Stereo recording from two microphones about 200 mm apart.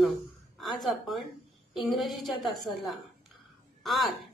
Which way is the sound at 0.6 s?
Centre (ahead or behind).